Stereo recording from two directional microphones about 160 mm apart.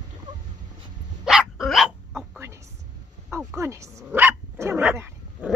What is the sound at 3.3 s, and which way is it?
Speech, 15° right (ahead or behind).